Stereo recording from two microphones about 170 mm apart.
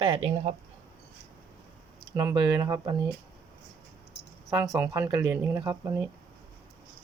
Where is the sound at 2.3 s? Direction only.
25° right (ahead or behind).